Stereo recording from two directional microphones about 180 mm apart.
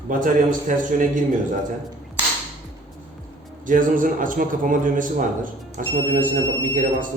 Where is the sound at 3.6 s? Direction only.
45° right (ahead or behind).